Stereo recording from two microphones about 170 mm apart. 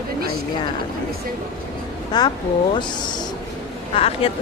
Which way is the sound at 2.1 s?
25° left (ahead or behind).